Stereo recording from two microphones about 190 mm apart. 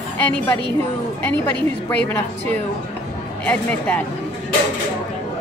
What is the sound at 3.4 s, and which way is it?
Speech, 5° left (ahead or behind).